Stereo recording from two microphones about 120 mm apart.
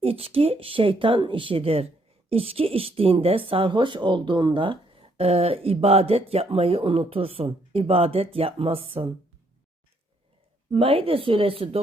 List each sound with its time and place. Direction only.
0.0 s speech: 55° right (ahead or behind)
10.7 s speech: 50° right (ahead or behind)